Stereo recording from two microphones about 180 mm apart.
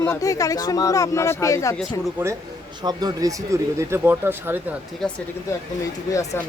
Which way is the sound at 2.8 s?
20° right (ahead or behind).